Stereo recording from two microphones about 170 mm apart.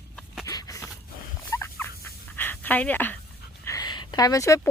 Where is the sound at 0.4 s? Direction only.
20° left (ahead or behind).